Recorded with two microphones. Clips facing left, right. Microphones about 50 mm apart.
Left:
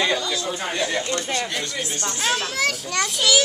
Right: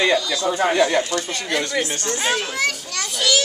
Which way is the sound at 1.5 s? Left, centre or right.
Right.